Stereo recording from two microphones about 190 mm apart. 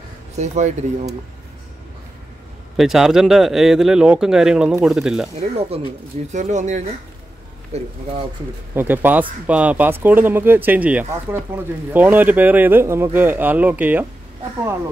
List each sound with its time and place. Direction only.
0.4 s speech: 40° right (ahead or behind)
2.8 s speech: centre (ahead or behind)
5.4 s speech: 30° right (ahead or behind)
8.7 s speech: 10° right (ahead or behind)